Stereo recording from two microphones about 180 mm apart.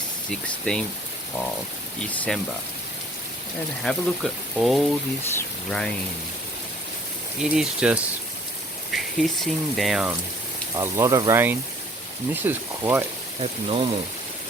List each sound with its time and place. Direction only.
0.3 s speech: 5° left (ahead or behind)
2.0 s speech: 5° left (ahead or behind)
3.8 s speech: centre (ahead or behind)
7.4 s speech: 5° right (ahead or behind)
10.8 s speech: 15° right (ahead or behind)
13.4 s speech: 30° right (ahead or behind)